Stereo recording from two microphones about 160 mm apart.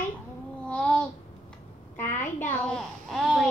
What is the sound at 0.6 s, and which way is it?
Babbling, 10° left (ahead or behind).